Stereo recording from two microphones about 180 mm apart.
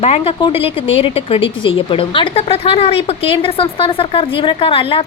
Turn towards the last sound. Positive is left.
turn(degrees=30)  # may be behind; listen again after turning